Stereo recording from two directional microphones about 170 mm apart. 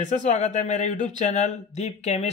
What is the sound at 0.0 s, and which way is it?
Speech, 45° left (ahead or behind).